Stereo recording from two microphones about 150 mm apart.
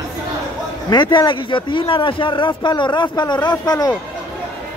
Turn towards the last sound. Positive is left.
turn(degrees=30)  # may be behind; listen again after turning